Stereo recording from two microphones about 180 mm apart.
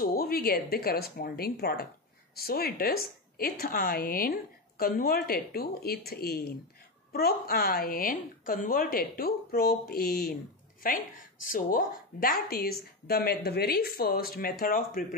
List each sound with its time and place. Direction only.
0.0 s a woman's voice: 55° left (ahead or behind)